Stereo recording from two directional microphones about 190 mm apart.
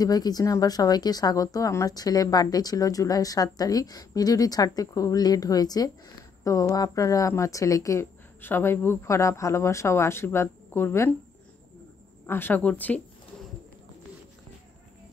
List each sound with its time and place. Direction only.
0.0 s a woman's voice: 20° left (ahead or behind)
12.3 s speech: 10° left (ahead or behind)